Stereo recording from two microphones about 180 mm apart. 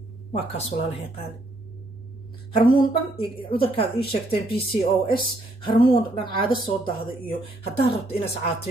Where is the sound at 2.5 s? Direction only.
30° left (ahead or behind).